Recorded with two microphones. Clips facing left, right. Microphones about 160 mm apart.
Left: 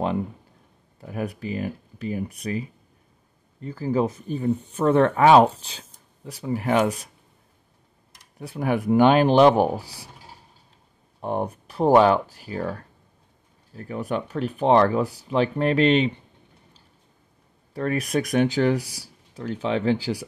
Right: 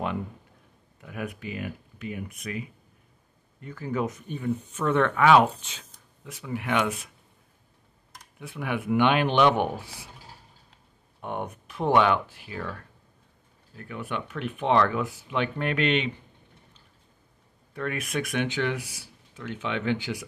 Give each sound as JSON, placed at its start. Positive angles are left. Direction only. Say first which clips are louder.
{"t": 1.0, "sound": "speech", "louder": "left 5 dB", "side_deg": 35}
{"t": 8.4, "sound": "speech", "louder": "left 7 dB", "side_deg": 40}
{"t": 11.1, "sound": "speech", "louder": "left 6 dB", "side_deg": 35}
{"t": 17.7, "sound": "speech", "louder": "left 6 dB", "side_deg": 35}